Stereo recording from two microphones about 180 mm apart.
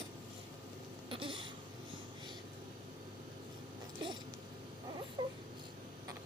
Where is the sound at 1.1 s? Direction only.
30° right (ahead or behind).